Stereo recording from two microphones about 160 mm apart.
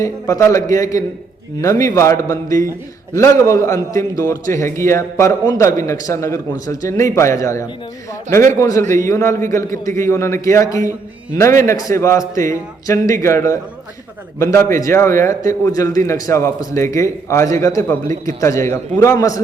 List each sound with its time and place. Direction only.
0.0 s a man's voice: 20° left (ahead or behind)